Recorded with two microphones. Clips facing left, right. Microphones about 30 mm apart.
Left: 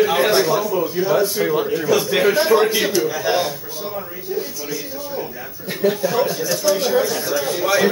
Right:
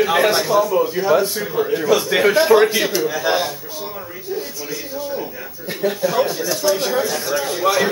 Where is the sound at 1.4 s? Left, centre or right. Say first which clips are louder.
Left 2 dB; centre.